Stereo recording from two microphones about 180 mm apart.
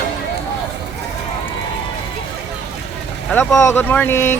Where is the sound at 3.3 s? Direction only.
10° left (ahead or behind).